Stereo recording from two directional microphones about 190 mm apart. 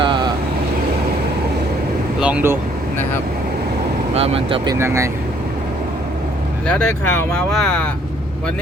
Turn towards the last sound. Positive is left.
turn(degrees=5)  # may be behind; listen again after turning